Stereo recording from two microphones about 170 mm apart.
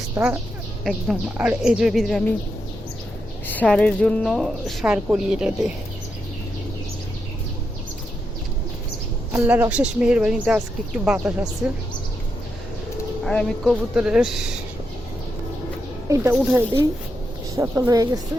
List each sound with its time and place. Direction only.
0.1 s a woman's voice: 10° right (ahead or behind)
3.4 s a woman's voice: 10° left (ahead or behind)
9.3 s speech: 10° right (ahead or behind)
13.2 s a woman's voice: 5° left (ahead or behind)
16.0 s speech: 15° right (ahead or behind)